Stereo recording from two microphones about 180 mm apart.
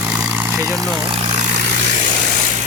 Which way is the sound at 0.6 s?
15° right (ahead or behind).